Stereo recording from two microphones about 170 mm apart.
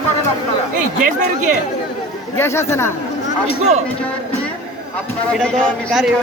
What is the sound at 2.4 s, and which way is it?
Speech, 15° left (ahead or behind).